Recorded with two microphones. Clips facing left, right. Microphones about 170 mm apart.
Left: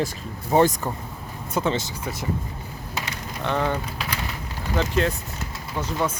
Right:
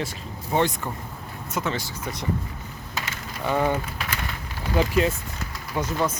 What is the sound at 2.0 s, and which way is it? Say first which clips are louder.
Speech: left 1 dB; 5° left (ahead or behind).